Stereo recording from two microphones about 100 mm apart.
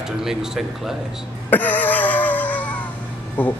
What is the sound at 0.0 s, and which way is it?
Speech, 5° right (ahead or behind).